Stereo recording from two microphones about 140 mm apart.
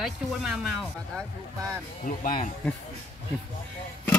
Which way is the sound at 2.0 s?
75° left (ahead or behind).